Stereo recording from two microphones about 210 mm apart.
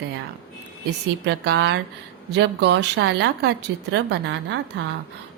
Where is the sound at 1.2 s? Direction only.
55° right (ahead or behind).